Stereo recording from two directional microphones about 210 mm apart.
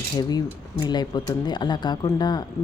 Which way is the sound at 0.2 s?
20° left (ahead or behind).